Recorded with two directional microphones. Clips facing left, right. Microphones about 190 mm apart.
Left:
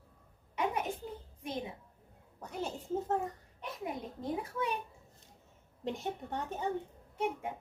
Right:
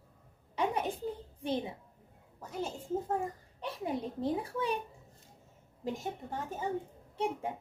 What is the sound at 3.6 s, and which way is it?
A child's voice, 30° right (ahead or behind).